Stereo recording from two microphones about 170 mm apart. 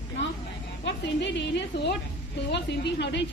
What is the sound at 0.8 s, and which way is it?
A woman's voice, 90° left.